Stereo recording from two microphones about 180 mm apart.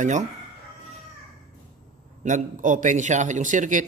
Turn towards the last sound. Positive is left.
turn(degrees=-45)  # may be behind; listen again after turning